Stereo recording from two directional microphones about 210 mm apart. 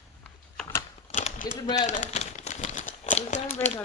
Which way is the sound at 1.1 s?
35° left (ahead or behind).